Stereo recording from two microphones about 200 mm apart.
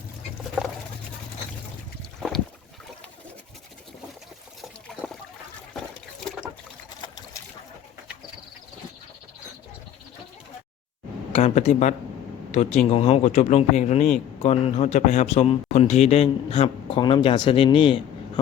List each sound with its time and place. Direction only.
11.3 s a man's voice: 35° left (ahead or behind)